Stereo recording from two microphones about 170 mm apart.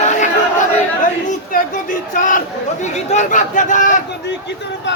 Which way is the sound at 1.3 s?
50° left (ahead or behind).